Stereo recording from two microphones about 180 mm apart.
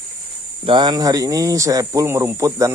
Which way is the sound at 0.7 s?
25° right (ahead or behind).